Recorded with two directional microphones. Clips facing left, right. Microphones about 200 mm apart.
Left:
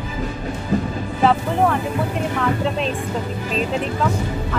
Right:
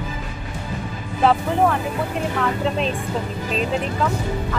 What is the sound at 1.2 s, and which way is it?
Music, centre (ahead or behind).